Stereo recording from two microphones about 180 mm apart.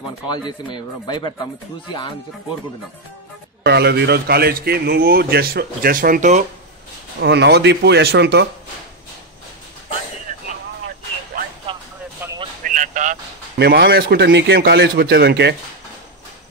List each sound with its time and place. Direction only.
0.5 s speech: 25° left (ahead or behind)
3.6 s a man's voice: 65° right (ahead or behind); by 6.4 s 45° right (ahead or behind)
7.2 s speech: 70° right (ahead or behind)
12.6 s a sound: 45° right (ahead or behind)
13.6 s a man's voice: 65° right (ahead or behind)